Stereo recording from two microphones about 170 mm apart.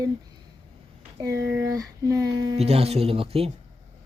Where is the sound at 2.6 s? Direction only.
35° right (ahead or behind).